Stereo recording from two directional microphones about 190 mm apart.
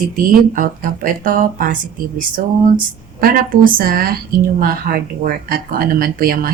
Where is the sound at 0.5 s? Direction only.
45° right (ahead or behind).